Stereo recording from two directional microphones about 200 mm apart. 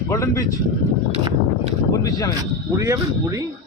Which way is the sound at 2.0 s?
20° left (ahead or behind).